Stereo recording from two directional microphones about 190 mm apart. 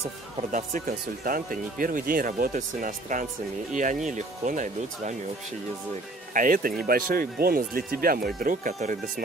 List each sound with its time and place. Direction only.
0.5 s speech: 45° right (ahead or behind)
6.3 s speech: 45° right (ahead or behind)